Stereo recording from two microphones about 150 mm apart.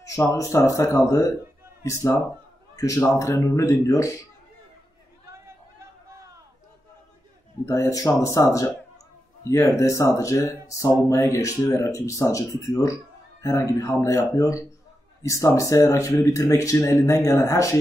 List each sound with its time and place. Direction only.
0.0 s speech: 20° left (ahead or behind)
7.6 s speech: 20° left (ahead or behind)